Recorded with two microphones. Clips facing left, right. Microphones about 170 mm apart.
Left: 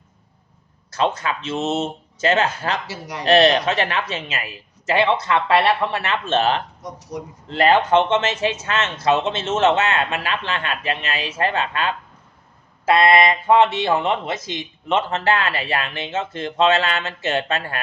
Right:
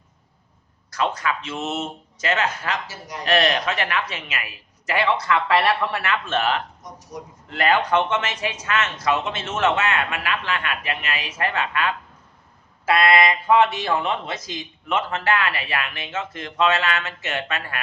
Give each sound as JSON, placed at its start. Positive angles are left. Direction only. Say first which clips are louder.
{"t": 0.9, "sound": "speech", "louder": "left 2 dB", "side_deg": 25}
{"t": 2.9, "sound": "speech", "louder": "left 4 dB", "side_deg": 70}
{"t": 3.2, "sound": "speech", "louder": "left 6 dB", "side_deg": 25}